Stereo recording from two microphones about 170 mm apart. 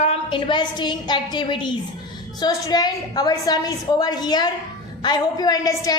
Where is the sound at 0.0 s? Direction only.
35° left (ahead or behind).